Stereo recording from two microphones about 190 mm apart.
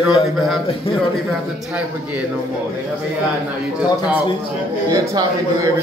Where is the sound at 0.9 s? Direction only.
30° left (ahead or behind).